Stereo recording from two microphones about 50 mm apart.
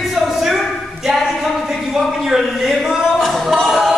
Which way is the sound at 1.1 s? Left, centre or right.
Centre.